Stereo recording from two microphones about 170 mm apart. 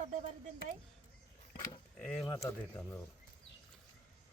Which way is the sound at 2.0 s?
5° left (ahead or behind).